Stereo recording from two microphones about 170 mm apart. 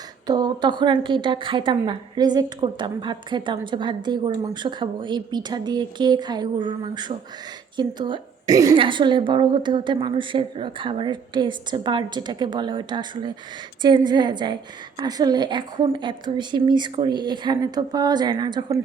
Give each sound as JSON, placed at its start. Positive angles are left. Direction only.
{"t": 0.3, "sound": "a woman's voice", "side_deg": -25}